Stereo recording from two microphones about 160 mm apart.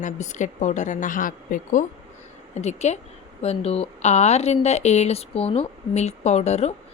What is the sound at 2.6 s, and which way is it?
Speech, 45° left (ahead or behind).